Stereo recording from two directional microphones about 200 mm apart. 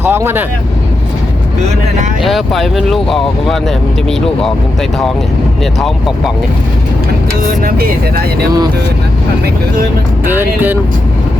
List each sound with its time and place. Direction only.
0.0 s speech: 10° right (ahead or behind)
2.2 s speech: centre (ahead or behind)
7.4 s speech: 45° right (ahead or behind)
10.2 s speech: 10° right (ahead or behind)